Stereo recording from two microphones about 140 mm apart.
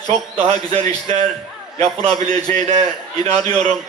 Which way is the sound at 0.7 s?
45° right (ahead or behind).